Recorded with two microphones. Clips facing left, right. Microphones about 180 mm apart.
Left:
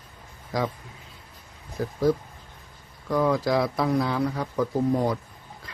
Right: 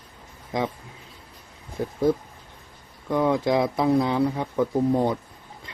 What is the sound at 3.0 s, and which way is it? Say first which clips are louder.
Speech: right 1 dB; 20° right (ahead or behind).